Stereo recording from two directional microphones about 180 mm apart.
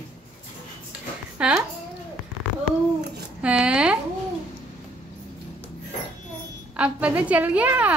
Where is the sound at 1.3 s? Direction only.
5° right (ahead or behind).